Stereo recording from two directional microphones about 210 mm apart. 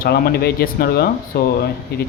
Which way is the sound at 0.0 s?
50° left (ahead or behind).